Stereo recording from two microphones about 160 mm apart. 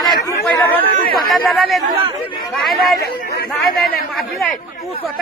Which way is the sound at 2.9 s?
75° left (ahead or behind).